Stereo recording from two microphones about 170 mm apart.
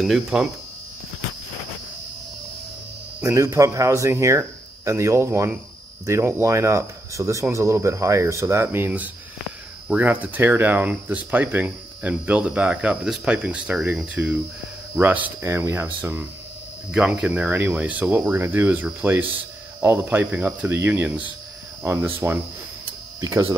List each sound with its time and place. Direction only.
0.0 s speech: centre (ahead or behind)
3.3 s speech: 20° right (ahead or behind)